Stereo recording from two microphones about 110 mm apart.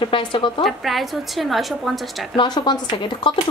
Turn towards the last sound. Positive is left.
turn(degrees=50)  # may be behind; listen again after turning